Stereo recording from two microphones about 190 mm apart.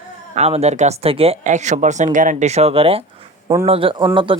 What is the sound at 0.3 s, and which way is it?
Speech, 35° right (ahead or behind).